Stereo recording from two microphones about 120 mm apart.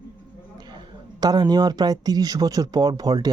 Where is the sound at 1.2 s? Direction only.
35° right (ahead or behind).